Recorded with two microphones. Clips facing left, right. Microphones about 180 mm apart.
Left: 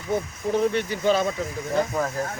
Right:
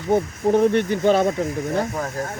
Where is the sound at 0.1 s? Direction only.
55° right (ahead or behind).